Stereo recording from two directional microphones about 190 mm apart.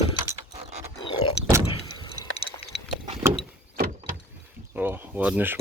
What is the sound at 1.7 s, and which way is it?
Door, 20° left (ahead or behind).